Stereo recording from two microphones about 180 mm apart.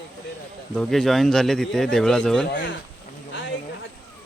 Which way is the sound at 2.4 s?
80° left.